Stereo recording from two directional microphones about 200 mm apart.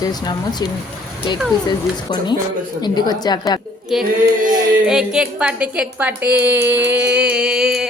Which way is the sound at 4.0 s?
45° right (ahead or behind).